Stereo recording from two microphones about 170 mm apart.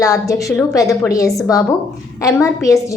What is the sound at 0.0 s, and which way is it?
A woman's voice, 20° left (ahead or behind).